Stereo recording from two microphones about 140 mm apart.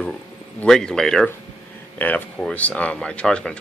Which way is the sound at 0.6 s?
5° left (ahead or behind).